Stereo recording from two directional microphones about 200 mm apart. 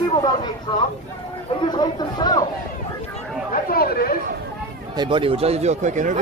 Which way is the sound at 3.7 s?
50° left (ahead or behind).